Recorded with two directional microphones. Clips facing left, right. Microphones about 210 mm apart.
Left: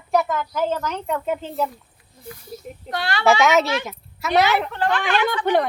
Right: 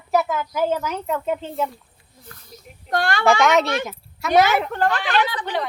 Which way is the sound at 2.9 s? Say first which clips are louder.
Right 4 dB; 50° right (ahead or behind).